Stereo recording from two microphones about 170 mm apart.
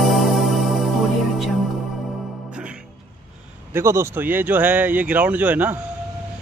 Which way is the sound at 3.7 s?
15° right (ahead or behind).